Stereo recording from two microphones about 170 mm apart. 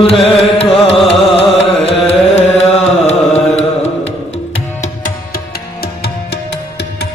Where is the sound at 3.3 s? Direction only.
40° left (ahead or behind).